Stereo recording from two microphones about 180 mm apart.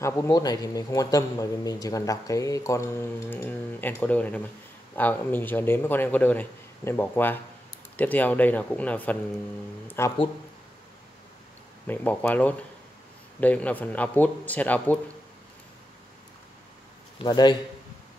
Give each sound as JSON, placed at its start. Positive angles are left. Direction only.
{"t": 0.0, "sound": "a man's voice", "side_deg": 20}
{"t": 11.9, "sound": "a man's voice", "side_deg": 10}
{"t": 17.2, "sound": "a man's voice", "side_deg": 25}